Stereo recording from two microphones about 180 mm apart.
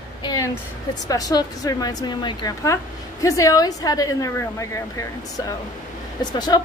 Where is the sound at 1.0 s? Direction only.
20° left (ahead or behind).